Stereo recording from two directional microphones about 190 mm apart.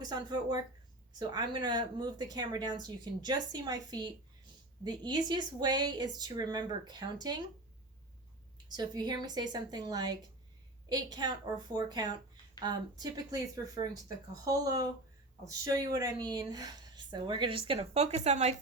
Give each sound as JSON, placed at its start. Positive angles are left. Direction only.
{"t": 0.0, "sound": "speech", "side_deg": -20}
{"t": 8.7, "sound": "speech", "side_deg": -20}